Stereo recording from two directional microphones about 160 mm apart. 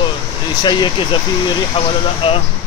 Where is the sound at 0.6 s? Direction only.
30° left (ahead or behind).